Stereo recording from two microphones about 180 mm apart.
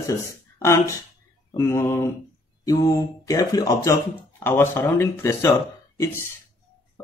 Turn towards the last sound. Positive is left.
turn(degrees=15)  # may be behind; listen again after turning